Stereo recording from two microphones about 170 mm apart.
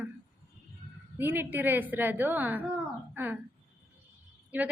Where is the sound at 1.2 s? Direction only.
10° right (ahead or behind).